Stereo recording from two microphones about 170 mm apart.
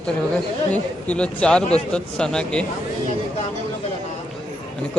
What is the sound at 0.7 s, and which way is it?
A man's voice, 5° left (ahead or behind).